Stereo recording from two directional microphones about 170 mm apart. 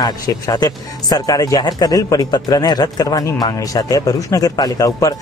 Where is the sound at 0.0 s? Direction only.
25° left (ahead or behind).